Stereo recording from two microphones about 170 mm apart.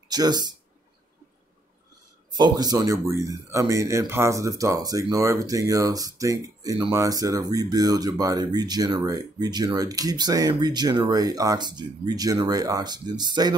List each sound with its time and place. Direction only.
0.1 s speech: 25° right (ahead or behind)
2.3 s speech: 25° right (ahead or behind)